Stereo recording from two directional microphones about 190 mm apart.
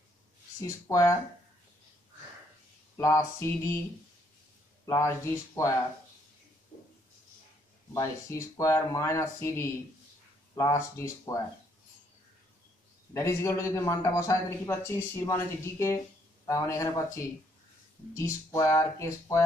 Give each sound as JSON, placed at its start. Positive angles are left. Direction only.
{"t": 0.6, "sound": "a man's voice", "side_deg": 15}
{"t": 3.0, "sound": "a man's voice", "side_deg": 15}
{"t": 4.8, "sound": "a man's voice", "side_deg": 15}
{"t": 7.9, "sound": "a man's voice", "side_deg": 15}
{"t": 13.1, "sound": "a man's voice", "side_deg": 15}